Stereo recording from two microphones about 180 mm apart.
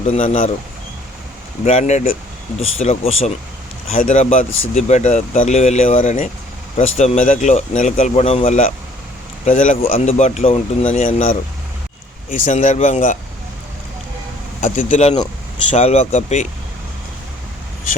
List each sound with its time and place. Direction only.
0.1 s speech: 40° left (ahead or behind)
1.6 s speech: 40° left (ahead or behind)
14.6 s speech: 45° left (ahead or behind)